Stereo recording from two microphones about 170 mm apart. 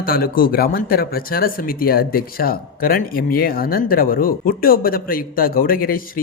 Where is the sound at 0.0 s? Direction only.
60° left (ahead or behind).